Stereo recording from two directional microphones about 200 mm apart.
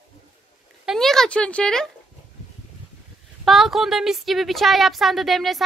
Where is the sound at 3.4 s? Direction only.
Centre (ahead or behind).